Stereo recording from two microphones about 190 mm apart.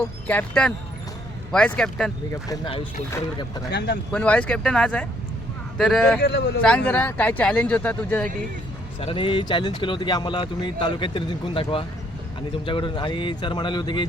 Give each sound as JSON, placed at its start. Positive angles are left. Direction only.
{"t": 0.3, "sound": "speech", "side_deg": 5}
{"t": 3.7, "sound": "speech", "side_deg": 60}
{"t": 4.1, "sound": "speech", "side_deg": 5}
{"t": 9.0, "sound": "speech", "side_deg": 25}